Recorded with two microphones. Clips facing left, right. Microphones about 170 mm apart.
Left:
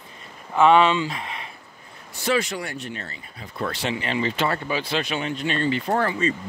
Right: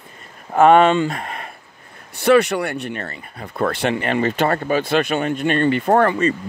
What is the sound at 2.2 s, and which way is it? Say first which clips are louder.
Speech: right 9 dB; 65° right (ahead or behind).